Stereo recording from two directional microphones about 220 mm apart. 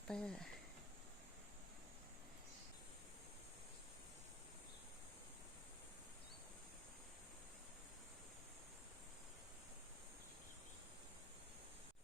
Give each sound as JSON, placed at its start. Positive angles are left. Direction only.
{"t": 0.1, "sound": "speech", "side_deg": 5}